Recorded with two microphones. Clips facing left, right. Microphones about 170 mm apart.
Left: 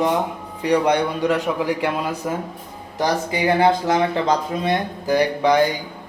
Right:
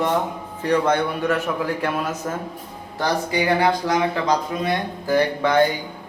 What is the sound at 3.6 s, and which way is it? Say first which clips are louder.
A man's voice: left 3 dB; 25° left (ahead or behind).